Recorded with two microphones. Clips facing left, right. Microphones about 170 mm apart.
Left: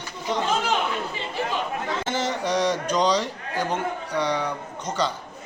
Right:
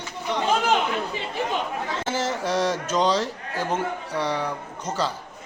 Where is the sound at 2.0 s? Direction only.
5° right (ahead or behind).